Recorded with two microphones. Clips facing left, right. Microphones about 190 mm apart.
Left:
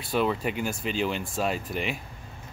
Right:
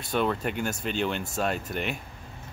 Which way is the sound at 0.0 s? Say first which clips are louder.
Left 1 dB; 5° left (ahead or behind).